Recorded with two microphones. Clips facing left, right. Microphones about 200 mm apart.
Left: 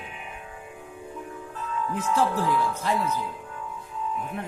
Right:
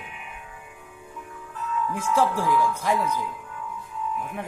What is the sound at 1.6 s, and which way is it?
Music, 30° left (ahead or behind).